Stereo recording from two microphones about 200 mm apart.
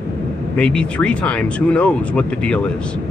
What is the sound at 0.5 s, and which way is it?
Speech, 5° left (ahead or behind).